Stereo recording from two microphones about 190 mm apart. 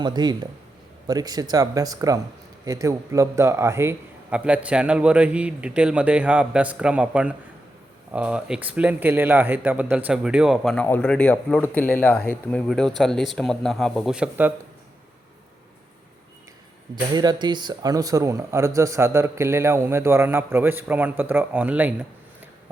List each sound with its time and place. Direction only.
0.0 s speech: 20° right (ahead or behind)
16.9 s speech: 20° right (ahead or behind)